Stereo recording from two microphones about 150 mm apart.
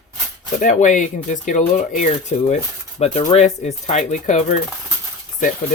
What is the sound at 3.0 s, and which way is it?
Speech, 45° left (ahead or behind).